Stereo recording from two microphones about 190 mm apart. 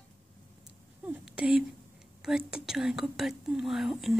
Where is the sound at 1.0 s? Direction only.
5° right (ahead or behind).